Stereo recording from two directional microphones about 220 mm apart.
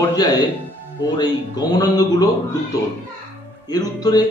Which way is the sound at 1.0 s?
20° left (ahead or behind).